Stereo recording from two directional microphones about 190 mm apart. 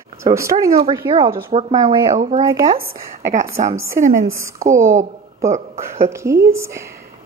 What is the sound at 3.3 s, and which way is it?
Speech, 40° right (ahead or behind).